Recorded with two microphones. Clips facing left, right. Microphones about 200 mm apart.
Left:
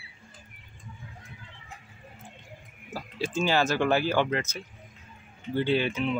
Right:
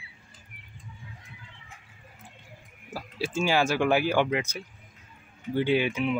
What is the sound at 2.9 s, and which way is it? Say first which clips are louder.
Speech: even; 10° right (ahead or behind).